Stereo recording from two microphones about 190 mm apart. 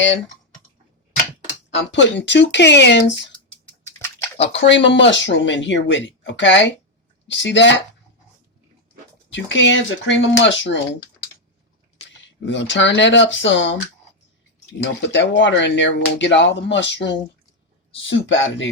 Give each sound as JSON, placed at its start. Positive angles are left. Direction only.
{"t": 1.9, "sound": "speech", "side_deg": 70}
{"t": 4.4, "sound": "speech", "side_deg": 70}
{"t": 9.3, "sound": "speech", "side_deg": 75}
{"t": 12.4, "sound": "speech", "side_deg": 70}
{"t": 14.8, "sound": "speech", "side_deg": 70}